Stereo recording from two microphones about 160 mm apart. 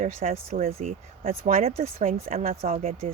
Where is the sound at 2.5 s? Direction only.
40° right (ahead or behind).